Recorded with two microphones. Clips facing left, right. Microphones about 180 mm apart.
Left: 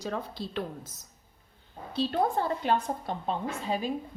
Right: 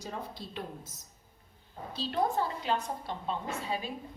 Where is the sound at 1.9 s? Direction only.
60° left (ahead or behind).